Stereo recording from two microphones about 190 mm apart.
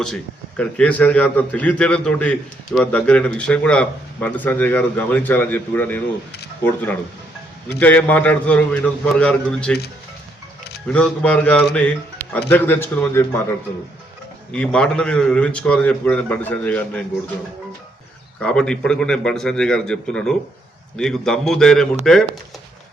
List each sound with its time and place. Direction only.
0.0 s a man's voice: 5° left (ahead or behind)
7.8 s a man's voice: 10° left (ahead or behind)
10.8 s a man's voice: 5° left (ahead or behind)
14.5 s a man's voice: 5° left (ahead or behind)
18.3 s a man's voice: 5° left (ahead or behind)